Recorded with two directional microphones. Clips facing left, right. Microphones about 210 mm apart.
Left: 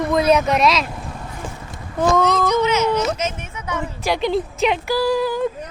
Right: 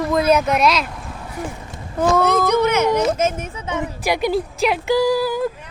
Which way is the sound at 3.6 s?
15° right (ahead or behind).